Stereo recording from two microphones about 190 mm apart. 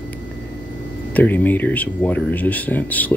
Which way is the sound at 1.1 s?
10° left (ahead or behind).